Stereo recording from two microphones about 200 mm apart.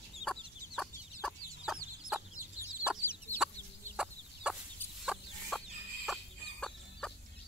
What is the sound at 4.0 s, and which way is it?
Fowl, 5° right (ahead or behind).